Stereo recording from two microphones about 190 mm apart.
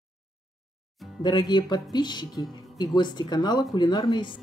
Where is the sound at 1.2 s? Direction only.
25° left (ahead or behind).